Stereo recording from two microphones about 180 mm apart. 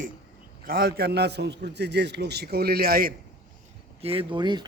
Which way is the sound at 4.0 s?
30° right (ahead or behind).